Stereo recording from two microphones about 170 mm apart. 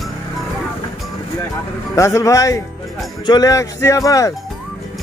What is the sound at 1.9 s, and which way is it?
Speech, 20° left (ahead or behind).